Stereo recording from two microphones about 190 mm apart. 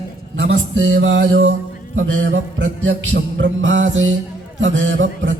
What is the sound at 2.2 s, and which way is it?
Music, 90° right.